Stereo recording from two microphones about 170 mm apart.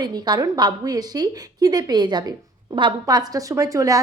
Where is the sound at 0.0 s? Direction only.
25° right (ahead or behind).